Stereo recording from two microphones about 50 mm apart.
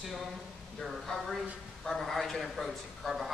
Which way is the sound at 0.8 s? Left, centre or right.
Centre.